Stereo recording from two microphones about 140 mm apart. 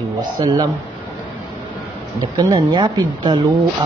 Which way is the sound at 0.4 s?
30° right (ahead or behind).